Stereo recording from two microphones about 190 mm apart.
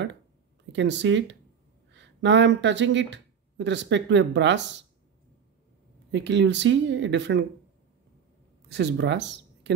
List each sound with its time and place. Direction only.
0.7 s speech: 70° right (ahead or behind)
6.1 s speech: 70° right (ahead or behind)
8.6 s speech: 65° right (ahead or behind)